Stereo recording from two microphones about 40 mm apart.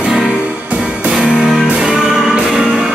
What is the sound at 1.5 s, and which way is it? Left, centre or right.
Music, centre.